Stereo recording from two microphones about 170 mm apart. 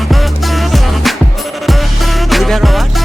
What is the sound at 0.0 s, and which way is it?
Music, centre (ahead or behind).